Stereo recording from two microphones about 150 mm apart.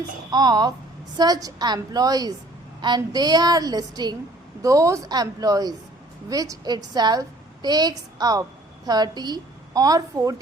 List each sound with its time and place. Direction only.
0.3 s a woman's voice: 30° right (ahead or behind)